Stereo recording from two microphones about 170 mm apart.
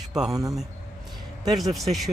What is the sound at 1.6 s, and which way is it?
Speech, centre (ahead or behind).